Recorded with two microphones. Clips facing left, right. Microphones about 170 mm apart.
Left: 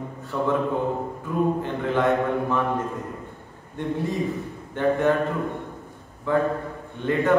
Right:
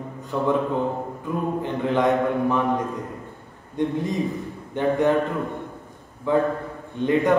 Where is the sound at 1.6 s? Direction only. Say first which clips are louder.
Right 2 dB; 15° right (ahead or behind).